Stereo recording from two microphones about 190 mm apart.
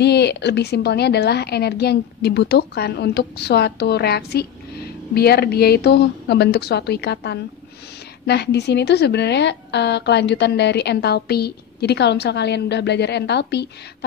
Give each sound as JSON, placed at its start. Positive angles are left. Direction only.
{"t": 0.0, "sound": "a woman's voice", "side_deg": 60}